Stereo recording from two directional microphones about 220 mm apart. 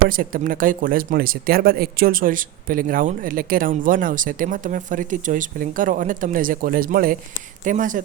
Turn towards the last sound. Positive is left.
turn(degrees=-35)  # may be behind; listen again after turning